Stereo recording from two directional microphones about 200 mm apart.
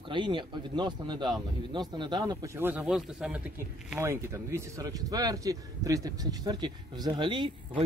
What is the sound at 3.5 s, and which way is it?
Speech, 15° right (ahead or behind).